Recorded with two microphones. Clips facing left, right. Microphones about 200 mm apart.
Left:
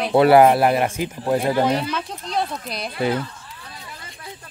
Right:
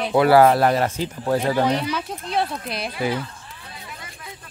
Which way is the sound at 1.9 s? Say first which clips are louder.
Right 1 dB; centre (ahead or behind).